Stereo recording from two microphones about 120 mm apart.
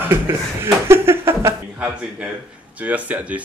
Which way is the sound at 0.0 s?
20° right (ahead or behind).